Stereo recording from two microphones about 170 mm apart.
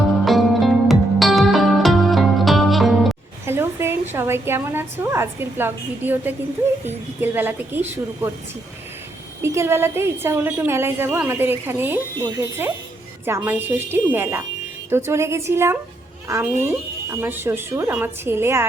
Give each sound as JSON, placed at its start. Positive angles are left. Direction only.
{"t": 0.3, "sound": "music", "side_deg": 0}
{"t": 3.4, "sound": "a sound", "side_deg": -15}
{"t": 4.1, "sound": "a woman's voice", "side_deg": -15}
{"t": 9.4, "sound": "a woman's voice", "side_deg": -15}